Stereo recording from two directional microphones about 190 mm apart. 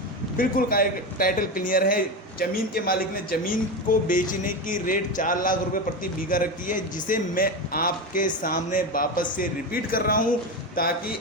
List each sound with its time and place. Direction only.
0.3 s speech: 50° left (ahead or behind)